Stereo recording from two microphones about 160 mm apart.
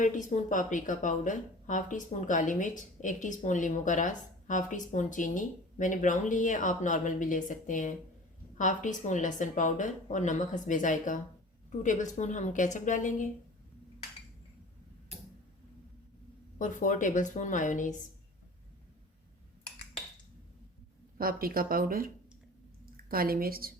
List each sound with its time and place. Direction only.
0.0 s a woman's voice: 50° left (ahead or behind)
16.6 s a woman's voice: 50° left (ahead or behind)
21.2 s a woman's voice: 65° right (ahead or behind)